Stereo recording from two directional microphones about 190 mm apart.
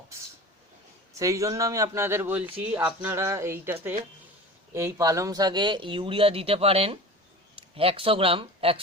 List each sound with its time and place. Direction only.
1.2 s a man's voice: 15° right (ahead or behind)